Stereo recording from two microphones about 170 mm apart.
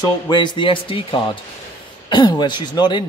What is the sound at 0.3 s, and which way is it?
Speech, 25° left (ahead or behind).